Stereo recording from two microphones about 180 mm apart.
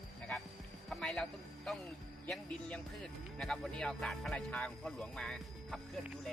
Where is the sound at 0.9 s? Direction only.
5° left (ahead or behind).